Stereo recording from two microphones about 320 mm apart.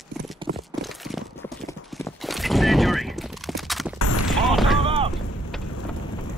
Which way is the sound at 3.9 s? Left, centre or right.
Left.